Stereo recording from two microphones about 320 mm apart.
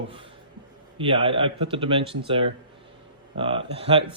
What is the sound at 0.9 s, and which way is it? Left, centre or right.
Speech, centre.